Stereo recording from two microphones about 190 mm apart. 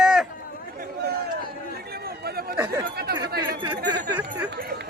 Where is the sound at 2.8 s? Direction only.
55° right (ahead or behind).